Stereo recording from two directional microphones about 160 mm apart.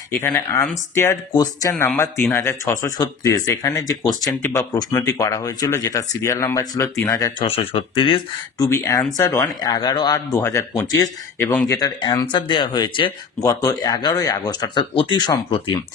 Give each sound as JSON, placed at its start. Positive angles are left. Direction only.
{"t": 0.1, "sound": "speech", "side_deg": 15}
{"t": 7.4, "sound": "speech", "side_deg": 35}
{"t": 8.6, "sound": "speech", "side_deg": 20}